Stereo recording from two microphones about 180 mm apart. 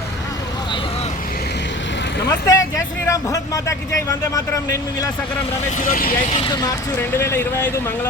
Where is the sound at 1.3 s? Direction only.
65° left (ahead or behind); by 2.2 s 80° left.